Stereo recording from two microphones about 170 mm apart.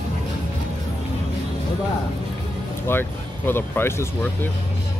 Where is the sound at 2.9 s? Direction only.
15° left (ahead or behind).